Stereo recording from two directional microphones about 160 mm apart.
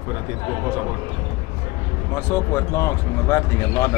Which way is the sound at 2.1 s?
15° left (ahead or behind).